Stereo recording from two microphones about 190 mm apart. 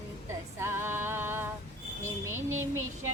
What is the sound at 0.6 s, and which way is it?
Music, 15° right (ahead or behind).